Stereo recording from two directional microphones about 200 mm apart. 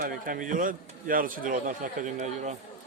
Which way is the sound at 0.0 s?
40° right (ahead or behind).